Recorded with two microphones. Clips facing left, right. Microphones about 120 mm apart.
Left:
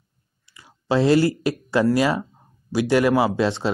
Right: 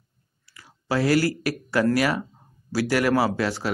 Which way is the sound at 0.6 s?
25° left (ahead or behind).